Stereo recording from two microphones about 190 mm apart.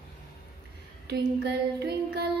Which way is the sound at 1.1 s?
55° right (ahead or behind).